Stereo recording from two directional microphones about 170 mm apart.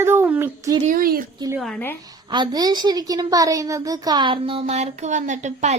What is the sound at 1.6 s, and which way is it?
Speech, centre (ahead or behind).